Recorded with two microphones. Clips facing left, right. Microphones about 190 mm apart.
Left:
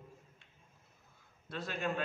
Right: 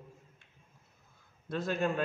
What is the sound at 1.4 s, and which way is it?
Speech, 45° right (ahead or behind).